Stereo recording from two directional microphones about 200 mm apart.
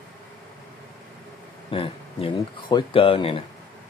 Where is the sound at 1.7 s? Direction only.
25° left (ahead or behind).